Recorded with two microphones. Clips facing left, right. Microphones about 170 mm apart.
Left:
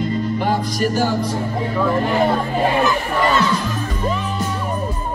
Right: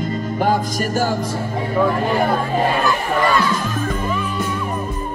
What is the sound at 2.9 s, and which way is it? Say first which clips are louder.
Crowd: even; 20° left (ahead or behind).